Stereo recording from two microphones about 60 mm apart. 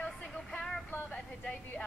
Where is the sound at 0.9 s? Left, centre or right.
Left.